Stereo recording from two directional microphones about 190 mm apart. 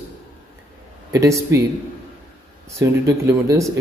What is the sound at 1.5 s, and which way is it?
Speech, 15° right (ahead or behind).